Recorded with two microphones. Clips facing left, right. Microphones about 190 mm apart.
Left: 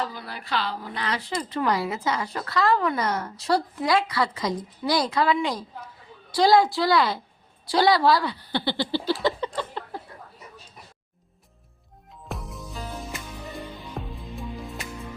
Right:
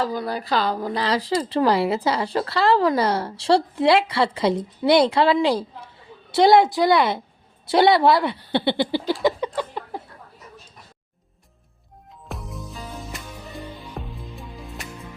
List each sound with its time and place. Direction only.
0.0 s a woman's voice: 40° right (ahead or behind); by 9.5 s 15° right (ahead or behind)
9.5 s a sound: 15° right (ahead or behind)
12.3 s music: centre (ahead or behind)